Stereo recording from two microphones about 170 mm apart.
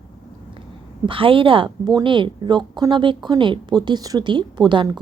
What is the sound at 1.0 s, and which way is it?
A woman's voice, 30° right (ahead or behind).